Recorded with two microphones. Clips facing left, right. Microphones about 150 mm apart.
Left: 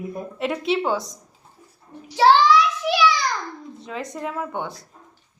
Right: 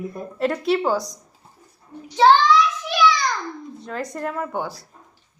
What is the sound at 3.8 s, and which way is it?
A woman's voice, centre (ahead or behind).